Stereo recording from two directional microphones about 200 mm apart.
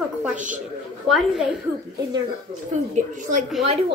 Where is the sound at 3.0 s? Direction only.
40° right (ahead or behind).